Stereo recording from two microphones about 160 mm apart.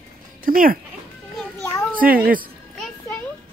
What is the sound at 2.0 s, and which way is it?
Speech, 65° right (ahead or behind).